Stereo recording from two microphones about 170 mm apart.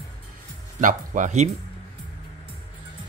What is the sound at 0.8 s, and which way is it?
Speech, 50° right (ahead or behind).